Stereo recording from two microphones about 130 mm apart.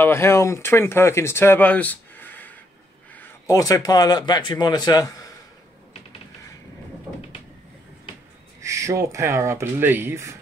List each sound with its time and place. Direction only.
0.0 s speech: 20° left (ahead or behind)
3.2 s a sound: 15° left (ahead or behind)
3.5 s speech: 30° left (ahead or behind)
8.5 s speech: 25° right (ahead or behind)